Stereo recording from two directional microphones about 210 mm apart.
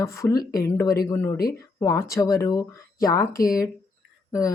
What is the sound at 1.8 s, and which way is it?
A woman's voice, 15° left (ahead or behind).